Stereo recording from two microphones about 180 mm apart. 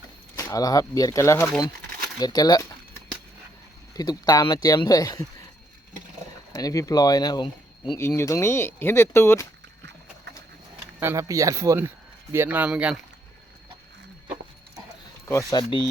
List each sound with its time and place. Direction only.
0.3 s speech: 20° left (ahead or behind)
3.9 s speech: 20° left (ahead or behind)
6.5 s speech: 20° left (ahead or behind)
7.9 s speech: 15° left (ahead or behind)
11.0 s speech: 15° right (ahead or behind)
15.3 s speech: 15° left (ahead or behind)